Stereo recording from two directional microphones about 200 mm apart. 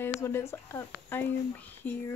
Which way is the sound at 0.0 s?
10° left (ahead or behind).